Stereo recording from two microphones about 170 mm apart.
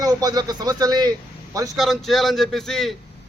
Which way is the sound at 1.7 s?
Centre (ahead or behind).